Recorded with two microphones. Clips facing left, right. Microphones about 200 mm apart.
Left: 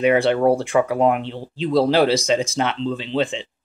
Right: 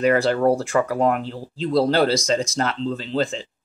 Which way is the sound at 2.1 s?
35° left (ahead or behind).